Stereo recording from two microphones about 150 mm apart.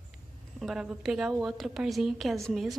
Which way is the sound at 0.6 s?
Centre (ahead or behind).